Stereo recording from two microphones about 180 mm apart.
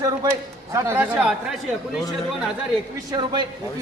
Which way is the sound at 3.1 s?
25° right (ahead or behind).